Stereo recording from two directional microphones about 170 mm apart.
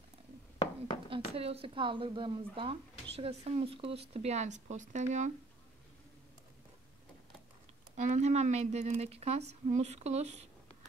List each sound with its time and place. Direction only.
1.1 s speech: 35° right (ahead or behind)
7.9 s speech: 45° right (ahead or behind)